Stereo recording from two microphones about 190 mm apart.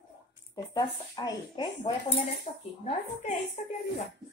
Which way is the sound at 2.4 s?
35° left (ahead or behind).